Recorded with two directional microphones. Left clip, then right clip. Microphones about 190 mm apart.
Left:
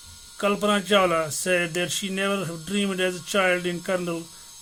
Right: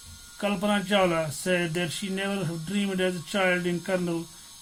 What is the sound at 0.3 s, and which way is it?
Speech, 40° left (ahead or behind).